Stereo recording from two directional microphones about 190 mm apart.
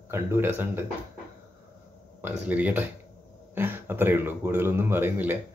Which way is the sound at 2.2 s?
10° right (ahead or behind).